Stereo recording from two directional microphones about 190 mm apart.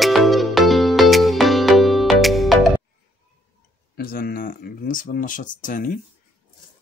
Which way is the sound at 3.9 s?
50° left (ahead or behind).